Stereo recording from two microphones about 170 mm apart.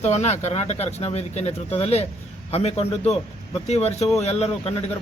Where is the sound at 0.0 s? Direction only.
40° left (ahead or behind).